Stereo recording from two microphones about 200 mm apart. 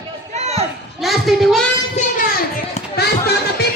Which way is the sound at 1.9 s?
40° left (ahead or behind).